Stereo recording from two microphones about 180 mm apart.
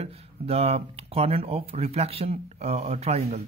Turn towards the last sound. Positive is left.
turn(degrees=-35)  # may be behind; listen again after turning